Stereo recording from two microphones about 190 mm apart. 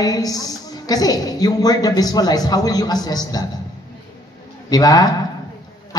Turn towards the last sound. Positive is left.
turn(degrees=20)  # may be behind; listen again after turning